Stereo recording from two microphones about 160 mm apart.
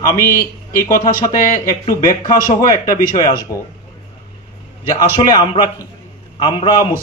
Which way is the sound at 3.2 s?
25° left (ahead or behind).